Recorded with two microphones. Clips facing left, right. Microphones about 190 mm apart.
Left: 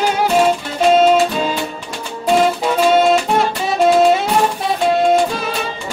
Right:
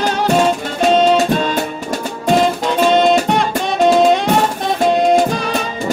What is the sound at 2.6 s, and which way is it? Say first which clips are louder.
Music: even; 5° left (ahead or behind).